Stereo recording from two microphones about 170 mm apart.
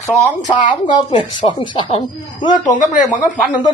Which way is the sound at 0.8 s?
30° left (ahead or behind).